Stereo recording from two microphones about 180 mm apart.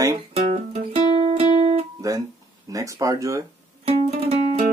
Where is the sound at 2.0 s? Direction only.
20° right (ahead or behind).